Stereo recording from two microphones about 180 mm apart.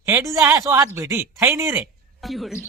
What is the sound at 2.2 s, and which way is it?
Speech, centre (ahead or behind).